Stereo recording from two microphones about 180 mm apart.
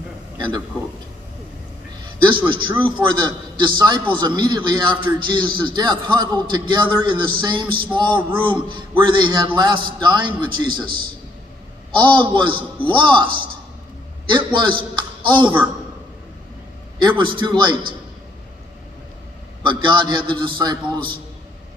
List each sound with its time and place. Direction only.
2.0 s a sound: 25° right (ahead or behind)
2.8 s a man's voice: 25° right (ahead or behind)
14.3 s a man's voice: 25° right (ahead or behind)
17.2 s a man's voice: 25° right (ahead or behind)
19.6 s a man's voice: 25° right (ahead or behind)